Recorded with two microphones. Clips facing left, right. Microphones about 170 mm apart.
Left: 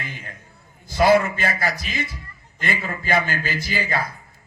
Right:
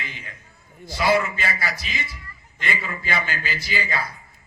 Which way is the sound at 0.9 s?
50° left (ahead or behind).